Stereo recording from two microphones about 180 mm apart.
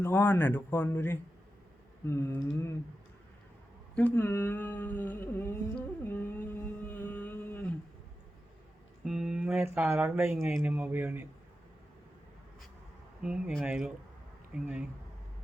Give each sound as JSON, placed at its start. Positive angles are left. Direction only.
{"t": 0.0, "sound": "speech", "side_deg": 10}
{"t": 3.9, "sound": "speech", "side_deg": 10}
{"t": 6.1, "sound": "a sound", "side_deg": 10}
{"t": 9.0, "sound": "a sound", "side_deg": 0}
{"t": 9.7, "sound": "speech", "side_deg": -10}
{"t": 13.2, "sound": "speech", "side_deg": -5}